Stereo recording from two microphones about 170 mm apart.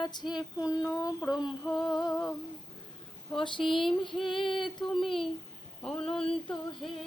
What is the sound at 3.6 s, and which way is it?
Speech, 5° right (ahead or behind).